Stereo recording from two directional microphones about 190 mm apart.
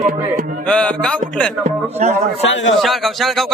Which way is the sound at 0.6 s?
5° left (ahead or behind).